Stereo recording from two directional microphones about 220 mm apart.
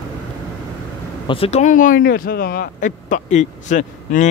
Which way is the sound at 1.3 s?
25° left (ahead or behind).